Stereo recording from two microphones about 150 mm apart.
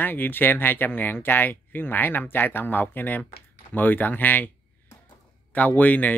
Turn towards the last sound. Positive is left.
turn(degrees=10)  # may be behind; listen again after turning